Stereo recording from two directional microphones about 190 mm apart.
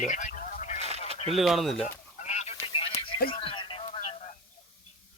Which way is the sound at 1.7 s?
35° left (ahead or behind).